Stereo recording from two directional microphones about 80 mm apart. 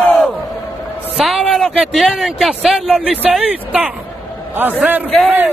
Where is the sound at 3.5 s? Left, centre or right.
Centre.